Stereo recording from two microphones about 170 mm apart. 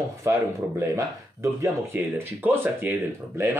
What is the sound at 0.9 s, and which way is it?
Speech, 15° right (ahead or behind).